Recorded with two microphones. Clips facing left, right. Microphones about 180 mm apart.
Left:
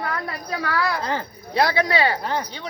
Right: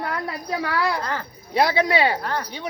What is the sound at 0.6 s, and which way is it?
A woman's voice, 20° right (ahead or behind).